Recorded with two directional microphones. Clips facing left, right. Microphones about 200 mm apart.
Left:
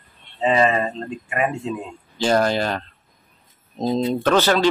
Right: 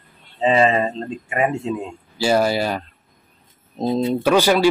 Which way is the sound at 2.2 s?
10° right (ahead or behind).